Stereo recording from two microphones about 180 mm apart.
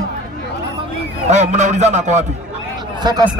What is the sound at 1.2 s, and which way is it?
A man's voice, 40° right (ahead or behind).